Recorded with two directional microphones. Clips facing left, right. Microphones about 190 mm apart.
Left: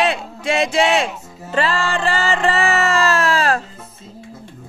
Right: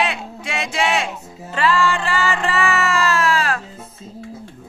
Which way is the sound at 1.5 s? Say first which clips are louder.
Right 1 dB; 35° left (ahead or behind).